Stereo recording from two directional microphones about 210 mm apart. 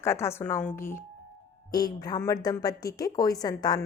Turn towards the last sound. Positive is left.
turn(degrees=20)  # may be behind; listen again after turning